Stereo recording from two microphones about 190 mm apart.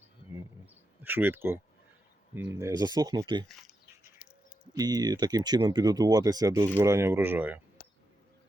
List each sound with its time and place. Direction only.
0.6 s a sound: 10° right (ahead or behind)
2.6 s speech: 20° right (ahead or behind)
4.6 s speech: 20° right (ahead or behind)